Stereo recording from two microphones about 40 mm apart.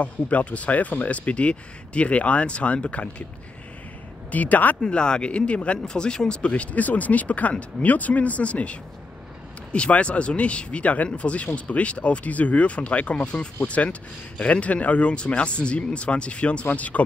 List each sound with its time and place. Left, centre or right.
0.0 s speech: left
4.3 s speech: left
4.8 s speech: left